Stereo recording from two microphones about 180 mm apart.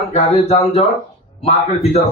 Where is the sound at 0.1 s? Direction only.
35° left (ahead or behind).